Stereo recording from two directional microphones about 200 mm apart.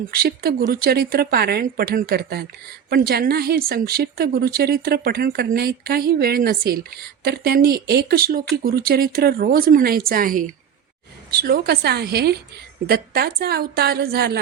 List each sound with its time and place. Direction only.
0.1 s a woman's voice: 50° right (ahead or behind)